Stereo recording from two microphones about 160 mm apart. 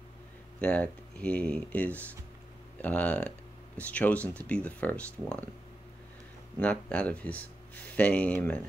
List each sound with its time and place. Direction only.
0.6 s speech: 10° left (ahead or behind)
6.6 s speech: 5° left (ahead or behind)